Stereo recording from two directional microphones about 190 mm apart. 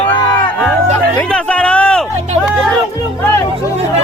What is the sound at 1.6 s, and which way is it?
Music, 5° left (ahead or behind).